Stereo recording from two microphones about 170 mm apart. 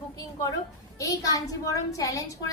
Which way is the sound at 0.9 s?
20° left (ahead or behind).